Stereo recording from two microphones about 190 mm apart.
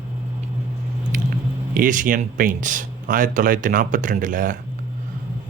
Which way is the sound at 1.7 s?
45° right (ahead or behind).